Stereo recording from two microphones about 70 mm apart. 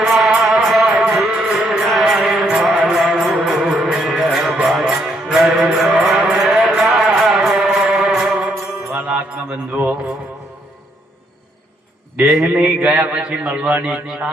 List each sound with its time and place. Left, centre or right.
0.0 s music: centre
9.0 s music: centre
12.5 s mantra: centre